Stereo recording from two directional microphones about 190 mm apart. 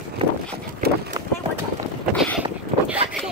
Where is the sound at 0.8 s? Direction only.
55° right (ahead or behind).